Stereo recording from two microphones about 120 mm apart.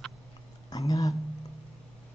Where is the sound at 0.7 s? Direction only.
30° left (ahead or behind).